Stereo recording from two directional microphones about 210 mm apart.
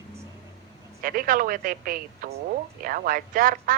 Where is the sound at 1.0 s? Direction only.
45° right (ahead or behind).